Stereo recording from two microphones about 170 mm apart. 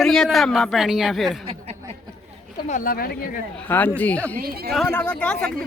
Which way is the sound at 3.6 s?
10° left (ahead or behind).